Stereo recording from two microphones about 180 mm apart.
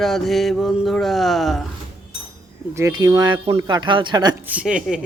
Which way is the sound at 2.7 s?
20° right (ahead or behind).